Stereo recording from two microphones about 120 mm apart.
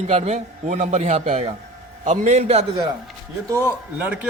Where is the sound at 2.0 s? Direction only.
80° right.